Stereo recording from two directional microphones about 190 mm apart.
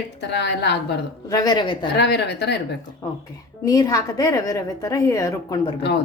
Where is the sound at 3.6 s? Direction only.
20° left (ahead or behind).